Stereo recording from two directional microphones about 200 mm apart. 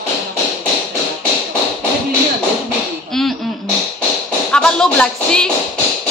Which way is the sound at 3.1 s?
Centre (ahead or behind).